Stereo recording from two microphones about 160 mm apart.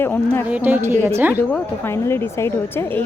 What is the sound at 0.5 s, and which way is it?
Speech, 10° right (ahead or behind).